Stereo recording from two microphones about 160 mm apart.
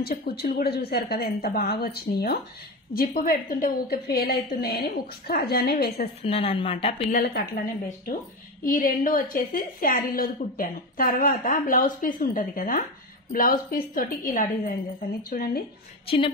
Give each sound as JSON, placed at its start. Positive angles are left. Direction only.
{"t": 0.1, "sound": "a woman's voice", "side_deg": 65}
{"t": 2.9, "sound": "a woman's voice", "side_deg": 65}
{"t": 6.2, "sound": "a woman's voice", "side_deg": 35}
{"t": 7.1, "sound": "a woman's voice", "side_deg": 70}
{"t": 16.1, "sound": "a woman's voice", "side_deg": 35}